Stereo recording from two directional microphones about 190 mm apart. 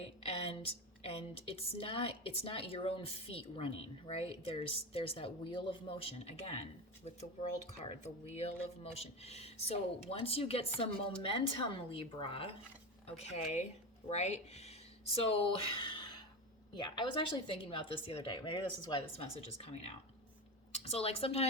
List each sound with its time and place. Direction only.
0.0 s a sound: 30° left (ahead or behind)
1.0 s a woman's voice: 30° left (ahead or behind)
7.7 s a woman's voice: 35° left (ahead or behind)